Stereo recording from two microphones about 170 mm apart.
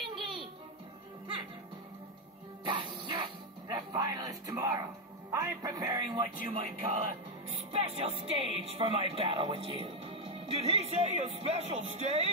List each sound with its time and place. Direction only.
0.1 s music: 30° right (ahead or behind)
2.6 s music: 30° right (ahead or behind)
3.6 s a sound: 20° right (ahead or behind)
5.3 s speech: 20° right (ahead or behind)
6.5 s speech: 35° right (ahead or behind)